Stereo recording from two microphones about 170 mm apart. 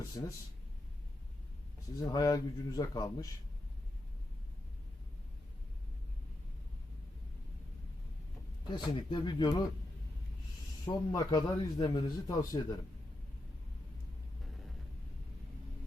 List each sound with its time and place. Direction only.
0.2 s a man's voice: 25° left (ahead or behind)
2.0 s a man's voice: 25° left (ahead or behind)
8.7 s a man's voice: 25° left (ahead or behind)
10.8 s a man's voice: 20° left (ahead or behind)